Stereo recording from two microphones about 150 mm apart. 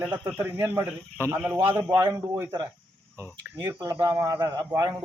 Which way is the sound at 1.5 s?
35° right (ahead or behind).